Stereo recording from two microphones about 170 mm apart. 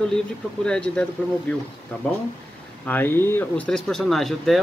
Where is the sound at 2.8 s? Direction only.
10° left (ahead or behind).